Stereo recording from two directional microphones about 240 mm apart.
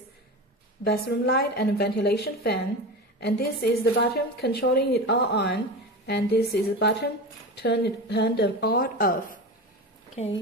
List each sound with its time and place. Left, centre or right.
0.8 s a woman's voice: left